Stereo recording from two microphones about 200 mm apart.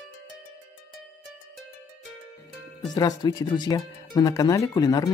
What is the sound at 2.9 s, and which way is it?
Speech, 20° left (ahead or behind).